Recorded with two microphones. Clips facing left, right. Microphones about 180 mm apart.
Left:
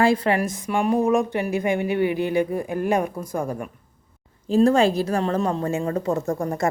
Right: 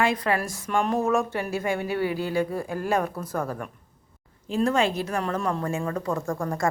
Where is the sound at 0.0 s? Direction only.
30° left (ahead or behind).